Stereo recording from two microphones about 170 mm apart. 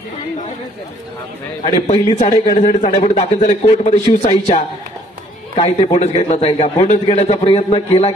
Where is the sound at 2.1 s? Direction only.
50° left (ahead or behind).